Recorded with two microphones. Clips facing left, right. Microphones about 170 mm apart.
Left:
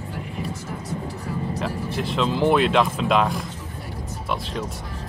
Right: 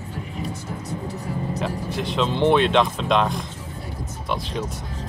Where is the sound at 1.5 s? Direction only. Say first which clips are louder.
Even; centre (ahead or behind).